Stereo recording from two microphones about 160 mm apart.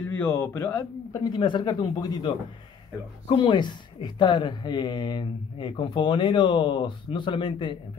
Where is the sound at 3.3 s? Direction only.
30° left (ahead or behind).